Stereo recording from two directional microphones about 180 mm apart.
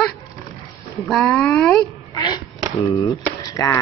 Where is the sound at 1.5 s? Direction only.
15° left (ahead or behind).